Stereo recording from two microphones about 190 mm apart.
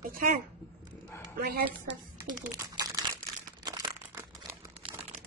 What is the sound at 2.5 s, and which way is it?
Crumpling, 20° right (ahead or behind).